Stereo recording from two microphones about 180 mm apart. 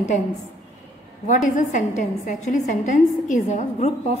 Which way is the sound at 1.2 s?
45° left (ahead or behind).